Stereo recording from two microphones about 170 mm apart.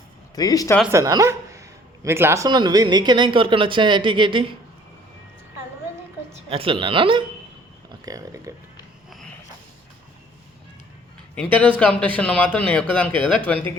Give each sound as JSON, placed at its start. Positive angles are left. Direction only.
{"t": 0.3, "sound": "speech", "side_deg": 20}
{"t": 0.9, "sound": "speech", "side_deg": -20}
{"t": 6.5, "sound": "speech", "side_deg": -30}
{"t": 8.0, "sound": "speech", "side_deg": -20}
{"t": 11.3, "sound": "a man's voice", "side_deg": 10}